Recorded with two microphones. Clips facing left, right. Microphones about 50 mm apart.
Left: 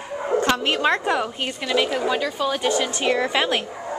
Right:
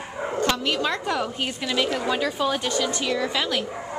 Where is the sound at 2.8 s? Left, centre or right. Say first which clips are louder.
Left 3 dB; left.